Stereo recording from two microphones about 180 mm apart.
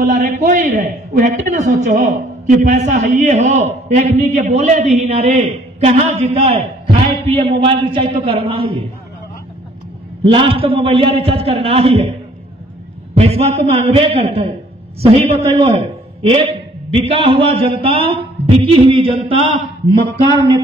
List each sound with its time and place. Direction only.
0.0 s a man's voice: 45° right (ahead or behind)
10.2 s a man's voice: 30° right (ahead or behind)
13.1 s a man's voice: 35° right (ahead or behind)